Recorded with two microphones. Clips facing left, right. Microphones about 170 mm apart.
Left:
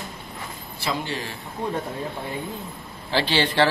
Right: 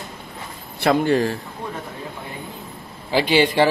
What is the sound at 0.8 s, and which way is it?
Speech, 55° right (ahead or behind).